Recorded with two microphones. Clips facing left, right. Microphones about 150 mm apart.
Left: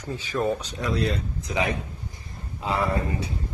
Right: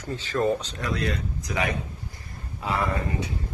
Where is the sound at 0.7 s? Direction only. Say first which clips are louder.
Left 2 dB; 20° left (ahead or behind).